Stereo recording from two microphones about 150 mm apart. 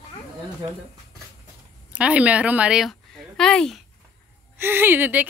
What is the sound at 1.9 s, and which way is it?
Speech, 10° right (ahead or behind).